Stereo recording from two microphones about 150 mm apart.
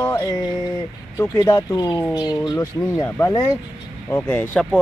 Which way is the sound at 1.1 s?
20° left (ahead or behind).